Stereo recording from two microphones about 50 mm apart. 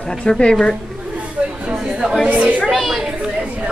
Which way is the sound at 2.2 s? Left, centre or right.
Right.